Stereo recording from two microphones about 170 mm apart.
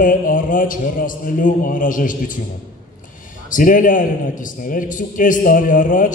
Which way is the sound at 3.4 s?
50° left (ahead or behind).